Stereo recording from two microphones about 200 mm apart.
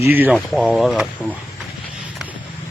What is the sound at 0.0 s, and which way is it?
Speech, 10° right (ahead or behind).